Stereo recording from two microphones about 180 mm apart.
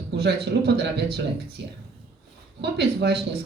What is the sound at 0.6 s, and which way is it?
Speech, 65° right (ahead or behind).